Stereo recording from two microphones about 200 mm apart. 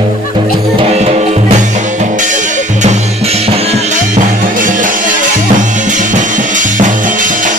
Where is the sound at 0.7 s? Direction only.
30° right (ahead or behind).